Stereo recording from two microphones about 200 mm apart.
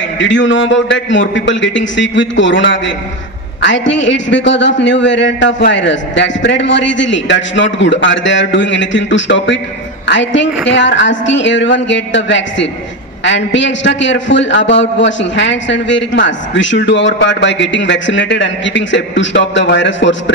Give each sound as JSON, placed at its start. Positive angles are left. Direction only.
{"t": 0.2, "sound": "a man's voice", "side_deg": 65}